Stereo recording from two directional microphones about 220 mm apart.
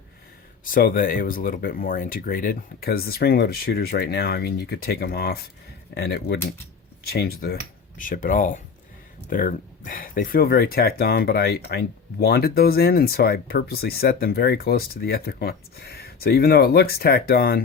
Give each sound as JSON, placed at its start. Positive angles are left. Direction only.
{"t": 0.6, "sound": "speech", "side_deg": 40}